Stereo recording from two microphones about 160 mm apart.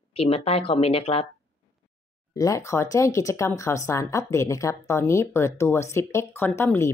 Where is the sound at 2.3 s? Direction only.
20° left (ahead or behind).